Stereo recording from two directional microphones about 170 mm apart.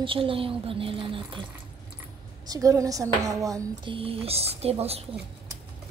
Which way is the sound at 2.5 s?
20° right (ahead or behind).